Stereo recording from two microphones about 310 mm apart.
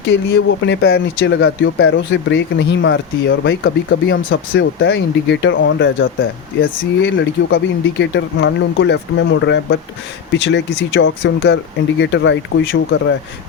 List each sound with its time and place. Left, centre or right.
0.3 s speech: left